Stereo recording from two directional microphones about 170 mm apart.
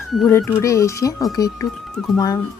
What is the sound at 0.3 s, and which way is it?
Speech, 15° left (ahead or behind).